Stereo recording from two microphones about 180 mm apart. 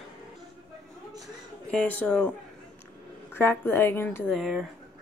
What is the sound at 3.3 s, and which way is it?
A woman's voice, 10° left (ahead or behind).